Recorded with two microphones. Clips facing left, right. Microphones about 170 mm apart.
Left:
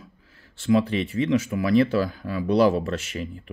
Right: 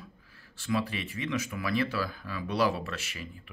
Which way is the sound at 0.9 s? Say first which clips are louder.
Left 11 dB; 35° left (ahead or behind).